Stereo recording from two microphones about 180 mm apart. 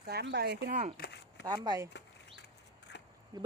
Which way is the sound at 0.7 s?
45° right (ahead or behind).